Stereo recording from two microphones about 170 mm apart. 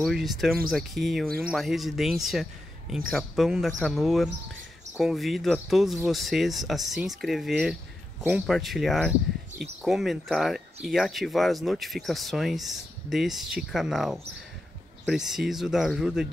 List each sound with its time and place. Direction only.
0.0 s speech: centre (ahead or behind)